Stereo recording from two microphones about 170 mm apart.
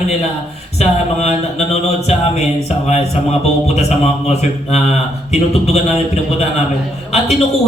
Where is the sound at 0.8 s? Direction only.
40° left (ahead or behind).